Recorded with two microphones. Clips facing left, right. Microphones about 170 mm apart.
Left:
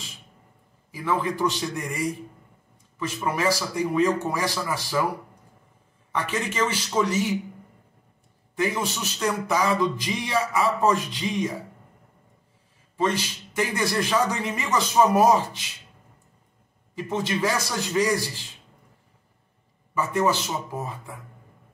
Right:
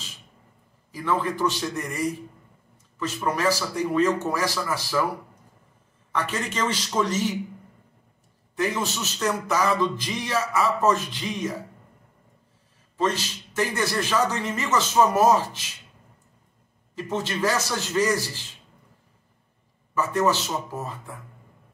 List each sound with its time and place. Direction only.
0.9 s speech: 10° left (ahead or behind)
3.0 s speech: 10° left (ahead or behind)
6.1 s speech: 10° left (ahead or behind)
8.5 s speech: 10° left (ahead or behind)
12.9 s speech: 10° left (ahead or behind)
16.9 s speech: 10° left (ahead or behind)
19.9 s a man's voice: 10° left (ahead or behind)